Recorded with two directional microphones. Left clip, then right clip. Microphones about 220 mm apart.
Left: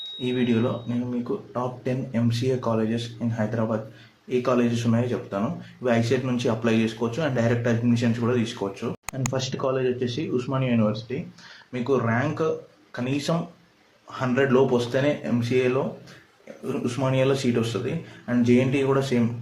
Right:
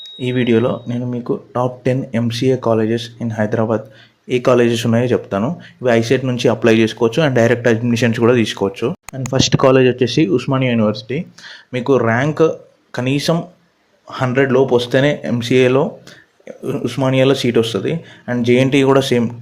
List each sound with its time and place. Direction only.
0.3 s speech: 35° right (ahead or behind)
16.8 s speech: 35° right (ahead or behind)